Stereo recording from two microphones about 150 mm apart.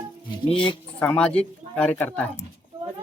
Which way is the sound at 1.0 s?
10° left (ahead or behind).